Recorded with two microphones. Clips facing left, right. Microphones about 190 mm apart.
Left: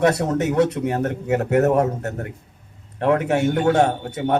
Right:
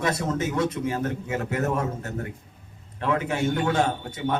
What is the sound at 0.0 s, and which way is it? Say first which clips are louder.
A man's voice: left 7 dB; 65° left (ahead or behind).